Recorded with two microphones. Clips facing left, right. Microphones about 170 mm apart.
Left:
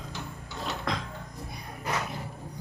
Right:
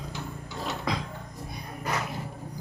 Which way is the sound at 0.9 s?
Centre (ahead or behind).